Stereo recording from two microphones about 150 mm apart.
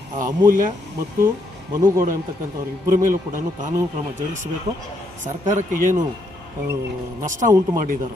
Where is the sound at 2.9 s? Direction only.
65° right (ahead or behind).